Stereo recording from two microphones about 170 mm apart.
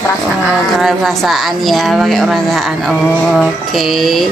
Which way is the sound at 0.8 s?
Centre (ahead or behind).